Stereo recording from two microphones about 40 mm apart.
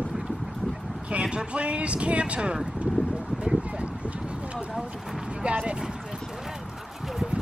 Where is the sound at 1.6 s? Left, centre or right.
Right.